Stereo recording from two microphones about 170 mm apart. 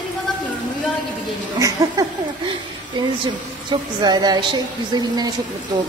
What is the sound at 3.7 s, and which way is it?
A woman's voice, 25° right (ahead or behind).